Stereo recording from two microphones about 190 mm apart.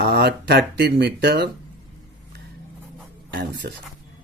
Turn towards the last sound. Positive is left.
turn(degrees=-65)  # may be behind; listen again after turning